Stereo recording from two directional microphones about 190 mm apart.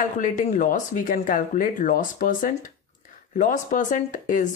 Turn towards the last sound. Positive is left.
turn(degrees=40)  # may be behind; listen again after turning